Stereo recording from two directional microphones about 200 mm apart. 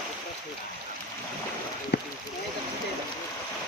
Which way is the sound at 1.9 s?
55° left (ahead or behind).